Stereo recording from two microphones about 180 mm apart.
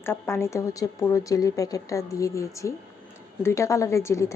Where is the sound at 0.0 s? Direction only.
15° left (ahead or behind).